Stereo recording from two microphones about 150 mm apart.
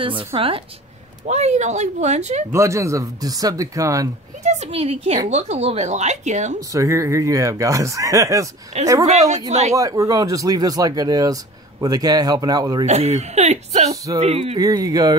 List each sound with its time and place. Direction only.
0.0 s a woman's voice: 35° right (ahead or behind)
1.2 s speech: 50° right (ahead or behind)
2.5 s speech: 20° right (ahead or behind)
4.4 s speech: 50° right (ahead or behind)
6.7 s speech: 20° right (ahead or behind)
8.7 s speech: 50° right (ahead or behind)
9.8 s speech: 25° right (ahead or behind)
12.8 s a woman's voice: 45° right (ahead or behind)
14.6 s speech: 25° right (ahead or behind)